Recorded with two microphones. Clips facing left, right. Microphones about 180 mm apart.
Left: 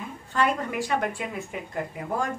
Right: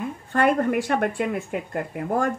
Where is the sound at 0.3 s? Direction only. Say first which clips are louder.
Right 6 dB; 55° right (ahead or behind).